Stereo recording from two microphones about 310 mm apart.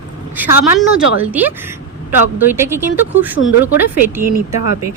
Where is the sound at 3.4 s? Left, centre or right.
Left.